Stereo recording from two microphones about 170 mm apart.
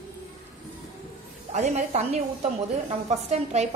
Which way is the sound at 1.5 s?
45° right (ahead or behind).